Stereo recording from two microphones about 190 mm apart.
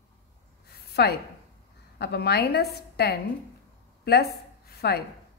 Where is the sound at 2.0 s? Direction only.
60° left (ahead or behind).